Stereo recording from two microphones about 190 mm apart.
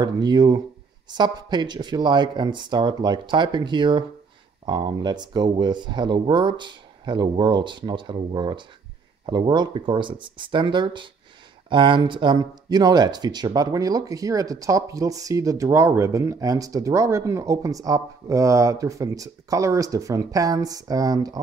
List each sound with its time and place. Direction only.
0.0 s speech: 20° right (ahead or behind)